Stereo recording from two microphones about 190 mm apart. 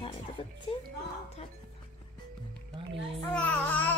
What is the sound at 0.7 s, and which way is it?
Speech, 30° left (ahead or behind).